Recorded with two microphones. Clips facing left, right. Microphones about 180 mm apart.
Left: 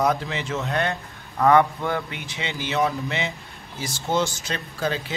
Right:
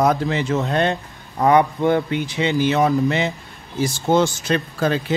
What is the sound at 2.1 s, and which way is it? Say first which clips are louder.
Speech: right 12 dB; 40° right (ahead or behind).